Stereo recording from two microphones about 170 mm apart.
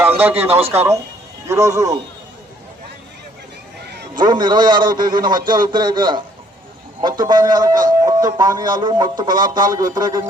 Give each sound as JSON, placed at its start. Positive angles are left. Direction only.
{"t": 0.0, "sound": "a man's voice", "side_deg": -10}
{"t": 4.2, "sound": "a man's voice", "side_deg": -25}